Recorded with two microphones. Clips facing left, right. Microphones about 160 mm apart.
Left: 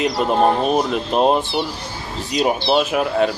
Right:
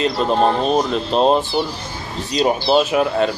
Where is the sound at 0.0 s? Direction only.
10° left (ahead or behind).